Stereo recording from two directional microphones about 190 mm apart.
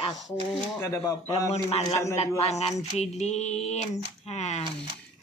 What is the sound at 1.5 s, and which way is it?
Mantra, 35° left (ahead or behind).